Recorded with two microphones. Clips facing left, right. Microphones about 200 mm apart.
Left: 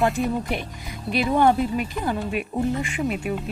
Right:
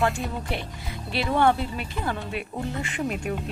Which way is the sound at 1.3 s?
15° left (ahead or behind).